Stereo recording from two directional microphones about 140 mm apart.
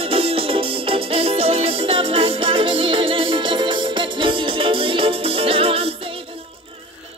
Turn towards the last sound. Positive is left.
turn(degrees=-40)  # may be behind; listen again after turning